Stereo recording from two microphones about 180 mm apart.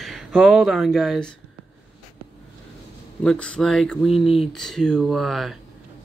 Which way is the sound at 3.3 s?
5° left (ahead or behind).